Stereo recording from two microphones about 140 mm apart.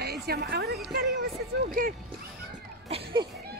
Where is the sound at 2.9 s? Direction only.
35° right (ahead or behind).